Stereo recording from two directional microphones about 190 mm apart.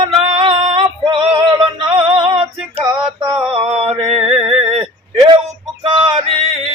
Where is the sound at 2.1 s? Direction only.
30° right (ahead or behind).